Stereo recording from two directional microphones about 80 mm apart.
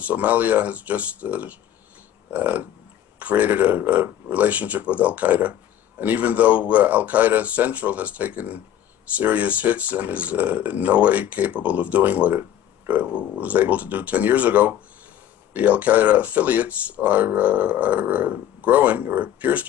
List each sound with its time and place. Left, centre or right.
0.0 s speech: centre